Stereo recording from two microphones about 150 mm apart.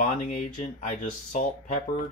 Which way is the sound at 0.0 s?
55° left (ahead or behind).